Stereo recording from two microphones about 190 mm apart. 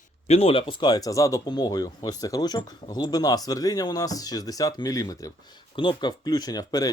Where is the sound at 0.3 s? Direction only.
30° left (ahead or behind).